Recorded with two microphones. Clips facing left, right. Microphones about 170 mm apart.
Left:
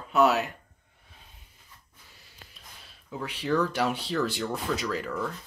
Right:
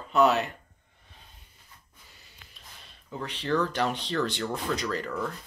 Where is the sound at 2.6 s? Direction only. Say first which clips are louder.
Even; centre (ahead or behind).